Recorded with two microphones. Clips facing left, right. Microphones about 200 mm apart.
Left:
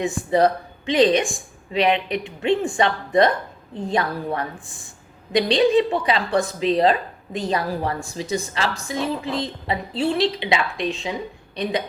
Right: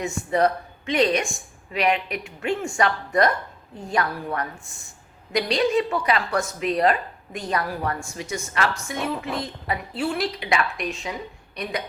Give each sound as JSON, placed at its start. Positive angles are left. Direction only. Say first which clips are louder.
{"t": 0.0, "sound": "speech", "louder": "left 3 dB", "side_deg": 35}
{"t": 9.0, "sound": "a woman's voice", "louder": "left 4 dB", "side_deg": 90}
{"t": 10.0, "sound": "a woman's voice", "louder": "left 6 dB", "side_deg": 30}